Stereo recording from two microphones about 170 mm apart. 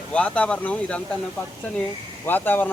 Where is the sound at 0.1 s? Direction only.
5° left (ahead or behind).